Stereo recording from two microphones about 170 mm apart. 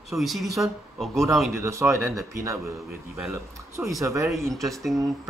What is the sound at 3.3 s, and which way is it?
Speech, 15° right (ahead or behind).